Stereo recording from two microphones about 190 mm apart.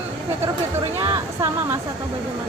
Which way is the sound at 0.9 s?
15° right (ahead or behind).